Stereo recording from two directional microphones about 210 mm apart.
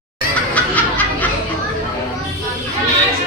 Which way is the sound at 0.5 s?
10° left (ahead or behind).